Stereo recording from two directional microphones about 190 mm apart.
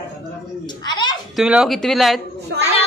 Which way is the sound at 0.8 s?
25° left (ahead or behind).